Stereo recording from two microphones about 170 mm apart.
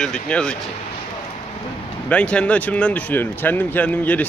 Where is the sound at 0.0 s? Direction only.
5° left (ahead or behind).